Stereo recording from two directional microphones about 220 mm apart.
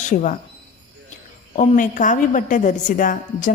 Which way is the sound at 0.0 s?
35° left (ahead or behind).